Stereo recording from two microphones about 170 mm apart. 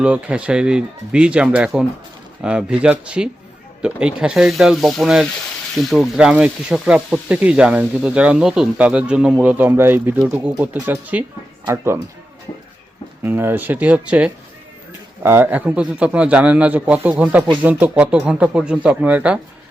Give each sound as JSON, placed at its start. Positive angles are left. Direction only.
{"t": 0.0, "sound": "speech", "side_deg": -5}
{"t": 13.2, "sound": "speech", "side_deg": -10}